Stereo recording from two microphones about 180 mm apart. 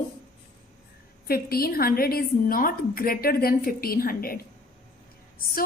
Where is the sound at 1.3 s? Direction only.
55° left (ahead or behind).